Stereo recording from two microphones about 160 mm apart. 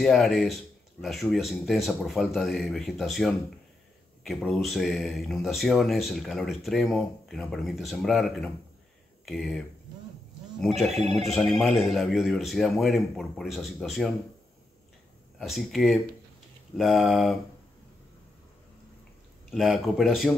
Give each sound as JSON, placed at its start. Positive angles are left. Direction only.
{"t": 0.0, "sound": "speech", "side_deg": 0}
{"t": 10.6, "sound": "speech", "side_deg": 0}
{"t": 11.1, "sound": "speech", "side_deg": -40}
{"t": 11.3, "sound": "speech", "side_deg": 0}
{"t": 15.3, "sound": "speech", "side_deg": 0}
{"t": 19.5, "sound": "speech", "side_deg": 0}